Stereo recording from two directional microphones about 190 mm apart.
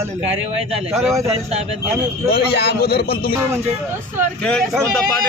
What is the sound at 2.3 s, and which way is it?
A man's voice, 60° left (ahead or behind).